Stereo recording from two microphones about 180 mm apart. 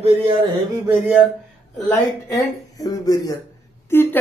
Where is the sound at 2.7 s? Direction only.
20° left (ahead or behind).